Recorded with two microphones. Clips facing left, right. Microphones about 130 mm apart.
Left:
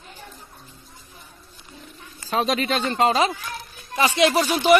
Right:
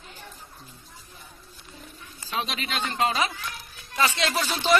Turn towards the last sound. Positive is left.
turn(degrees=10)  # may be behind; listen again after turning